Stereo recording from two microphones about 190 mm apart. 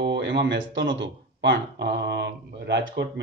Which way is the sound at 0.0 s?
65° right (ahead or behind).